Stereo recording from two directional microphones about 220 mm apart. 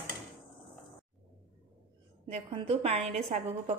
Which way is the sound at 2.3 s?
30° right (ahead or behind).